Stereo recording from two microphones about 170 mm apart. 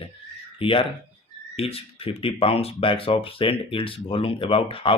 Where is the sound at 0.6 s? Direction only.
30° left (ahead or behind).